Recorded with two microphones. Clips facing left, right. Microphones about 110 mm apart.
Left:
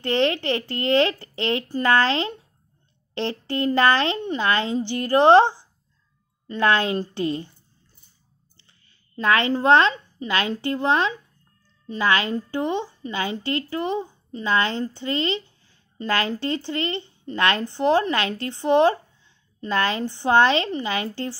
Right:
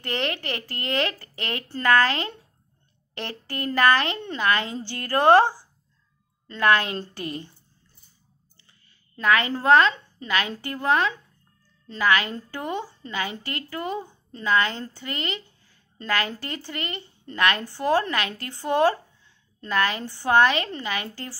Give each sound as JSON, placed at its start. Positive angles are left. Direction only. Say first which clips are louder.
{"t": 0.0, "sound": "a woman's voice", "louder": "left 7 dB", "side_deg": 25}
{"t": 9.1, "sound": "a woman's voice", "louder": "left 2 dB", "side_deg": 25}